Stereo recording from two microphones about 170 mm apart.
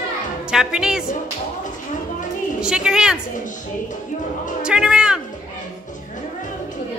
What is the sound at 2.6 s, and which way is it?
Speech, 5° right (ahead or behind).